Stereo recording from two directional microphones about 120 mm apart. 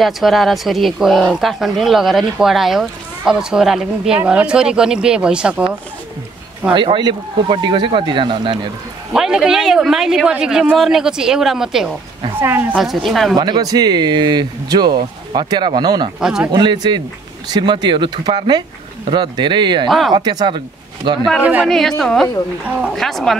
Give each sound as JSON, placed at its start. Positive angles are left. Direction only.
{"t": 0.0, "sound": "speech", "side_deg": 0}
{"t": 6.7, "sound": "speech", "side_deg": -40}
{"t": 9.1, "sound": "speech", "side_deg": -5}
{"t": 12.4, "sound": "speech", "side_deg": -15}
{"t": 12.8, "sound": "speech", "side_deg": 0}
{"t": 13.4, "sound": "speech", "side_deg": -35}
{"t": 16.2, "sound": "speech", "side_deg": -5}
{"t": 16.5, "sound": "speech", "side_deg": -35}
{"t": 21.4, "sound": "speech", "side_deg": -15}
{"t": 21.6, "sound": "speech", "side_deg": 5}